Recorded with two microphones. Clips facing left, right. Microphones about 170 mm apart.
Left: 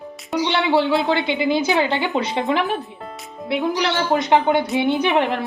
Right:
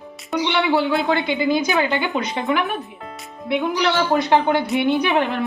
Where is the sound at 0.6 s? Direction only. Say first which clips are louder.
Left 3 dB; 20° left (ahead or behind).